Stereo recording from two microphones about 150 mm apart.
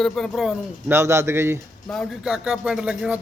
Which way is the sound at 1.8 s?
5° left (ahead or behind).